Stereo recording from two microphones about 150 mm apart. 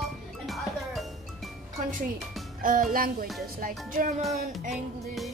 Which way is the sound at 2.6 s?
65° right (ahead or behind).